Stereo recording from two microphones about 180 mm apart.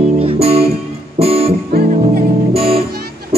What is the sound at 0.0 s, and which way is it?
Music, 30° right (ahead or behind).